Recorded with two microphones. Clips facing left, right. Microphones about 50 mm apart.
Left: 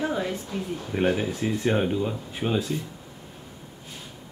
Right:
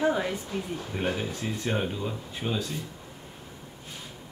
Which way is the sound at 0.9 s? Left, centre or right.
Centre.